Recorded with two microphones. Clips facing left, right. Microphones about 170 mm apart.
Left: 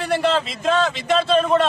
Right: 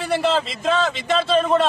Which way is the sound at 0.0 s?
Centre (ahead or behind).